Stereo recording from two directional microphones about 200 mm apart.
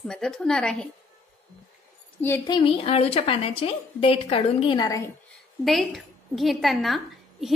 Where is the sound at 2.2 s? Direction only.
15° left (ahead or behind).